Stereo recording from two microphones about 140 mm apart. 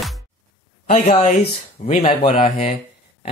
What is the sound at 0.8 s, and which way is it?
Speech, 55° left (ahead or behind).